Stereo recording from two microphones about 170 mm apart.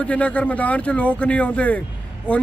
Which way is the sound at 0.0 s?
5° left (ahead or behind).